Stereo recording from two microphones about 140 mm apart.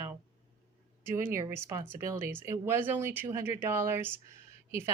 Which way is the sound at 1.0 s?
15° right (ahead or behind).